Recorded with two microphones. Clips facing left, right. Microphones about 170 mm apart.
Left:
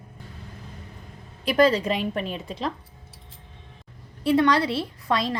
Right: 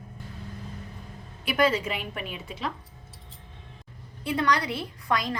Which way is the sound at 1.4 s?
35° left (ahead or behind).